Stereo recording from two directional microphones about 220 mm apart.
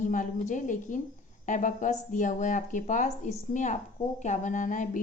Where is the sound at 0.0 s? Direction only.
35° left (ahead or behind).